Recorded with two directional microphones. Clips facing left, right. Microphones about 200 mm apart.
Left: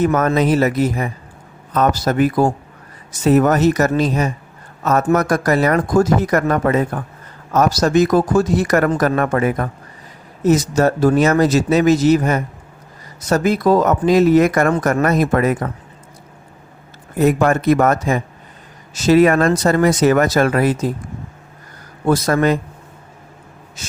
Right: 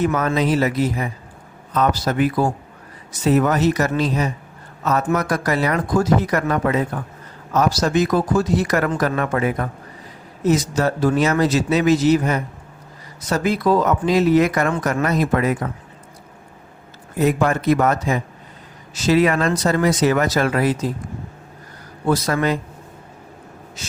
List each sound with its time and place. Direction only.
0.0 s speech: 45° left (ahead or behind)
17.2 s speech: 50° left (ahead or behind)
22.0 s speech: 45° left (ahead or behind)